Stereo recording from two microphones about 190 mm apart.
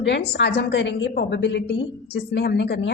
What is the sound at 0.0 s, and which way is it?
A woman's voice, 65° left (ahead or behind).